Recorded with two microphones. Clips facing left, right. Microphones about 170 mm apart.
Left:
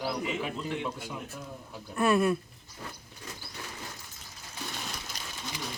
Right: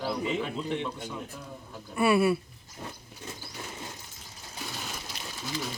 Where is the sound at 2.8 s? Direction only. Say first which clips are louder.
Right 2 dB; 25° right (ahead or behind).